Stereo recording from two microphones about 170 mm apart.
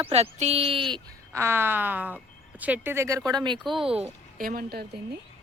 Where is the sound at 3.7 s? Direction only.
Centre (ahead or behind).